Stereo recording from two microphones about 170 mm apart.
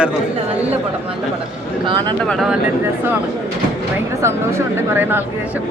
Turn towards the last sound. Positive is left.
turn(degrees=-10)  # may be behind; listen again after turning